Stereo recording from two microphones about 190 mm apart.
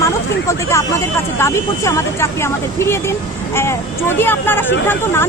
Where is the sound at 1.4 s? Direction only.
15° left (ahead or behind).